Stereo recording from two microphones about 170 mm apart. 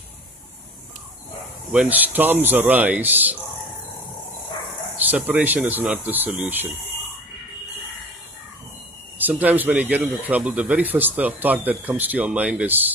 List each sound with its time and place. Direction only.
1.7 s speech: 5° right (ahead or behind)
4.9 s speech: 10° right (ahead or behind)
9.2 s speech: 10° right (ahead or behind)